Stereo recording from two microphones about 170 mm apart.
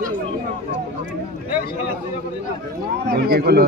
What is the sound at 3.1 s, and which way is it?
Speech, 65° right (ahead or behind).